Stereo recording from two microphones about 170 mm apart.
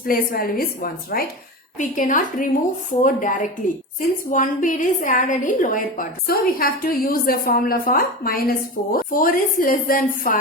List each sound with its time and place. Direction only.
0.1 s a woman's voice: 55° left (ahead or behind)
1.8 s a woman's voice: 50° left (ahead or behind)